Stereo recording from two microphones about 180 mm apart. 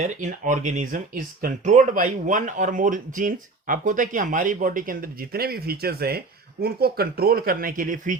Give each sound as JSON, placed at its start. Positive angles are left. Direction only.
{"t": 0.0, "sound": "speech", "side_deg": -45}